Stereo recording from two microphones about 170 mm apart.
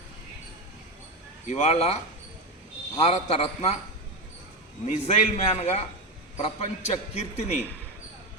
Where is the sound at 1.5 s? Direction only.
40° left (ahead or behind).